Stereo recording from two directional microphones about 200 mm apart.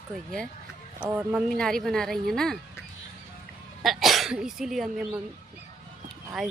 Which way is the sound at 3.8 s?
Centre (ahead or behind).